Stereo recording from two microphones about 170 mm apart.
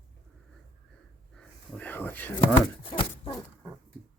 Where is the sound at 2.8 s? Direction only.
30° left (ahead or behind).